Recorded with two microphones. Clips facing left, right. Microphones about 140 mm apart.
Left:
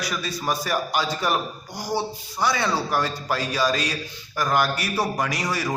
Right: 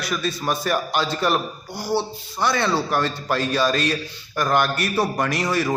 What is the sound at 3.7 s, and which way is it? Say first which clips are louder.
Speech: right 4 dB; 55° right (ahead or behind).